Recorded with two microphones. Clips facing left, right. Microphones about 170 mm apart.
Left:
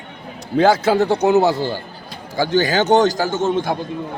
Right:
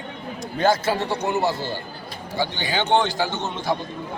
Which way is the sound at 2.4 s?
45° left (ahead or behind).